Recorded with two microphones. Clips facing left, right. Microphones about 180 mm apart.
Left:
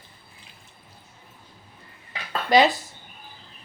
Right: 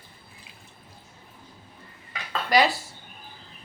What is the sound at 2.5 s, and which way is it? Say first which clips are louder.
Speech: left 3 dB; 20° left (ahead or behind).